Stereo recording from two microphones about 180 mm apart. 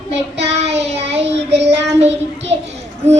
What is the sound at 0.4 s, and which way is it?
Child singing, 35° right (ahead or behind).